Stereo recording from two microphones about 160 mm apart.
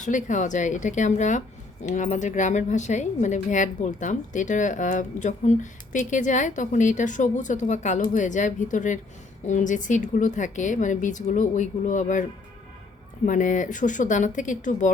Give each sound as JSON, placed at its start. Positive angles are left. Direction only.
{"t": 0.0, "sound": "a woman's voice", "side_deg": 50}
{"t": 13.2, "sound": "a woman's voice", "side_deg": 55}